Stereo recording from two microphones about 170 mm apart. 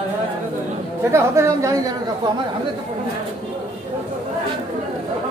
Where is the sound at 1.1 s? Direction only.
15° right (ahead or behind).